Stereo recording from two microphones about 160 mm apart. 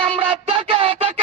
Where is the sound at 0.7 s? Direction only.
35° right (ahead or behind).